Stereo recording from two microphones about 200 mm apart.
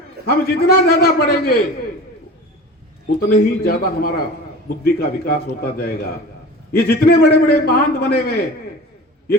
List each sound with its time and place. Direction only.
0.3 s a man's voice: 50° left (ahead or behind)
3.2 s a man's voice: 50° left (ahead or behind)